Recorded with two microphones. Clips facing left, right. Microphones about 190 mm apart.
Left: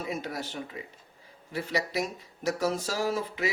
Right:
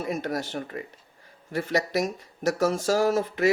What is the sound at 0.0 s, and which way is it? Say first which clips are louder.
Speech: right 5 dB; 45° right (ahead or behind).